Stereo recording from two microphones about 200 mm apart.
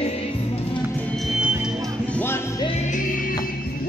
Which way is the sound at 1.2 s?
5° right (ahead or behind).